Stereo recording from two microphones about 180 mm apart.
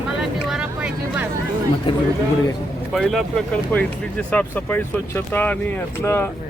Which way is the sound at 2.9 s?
Centre (ahead or behind).